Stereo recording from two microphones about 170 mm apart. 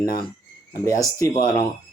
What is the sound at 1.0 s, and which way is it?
Speech, 15° left (ahead or behind).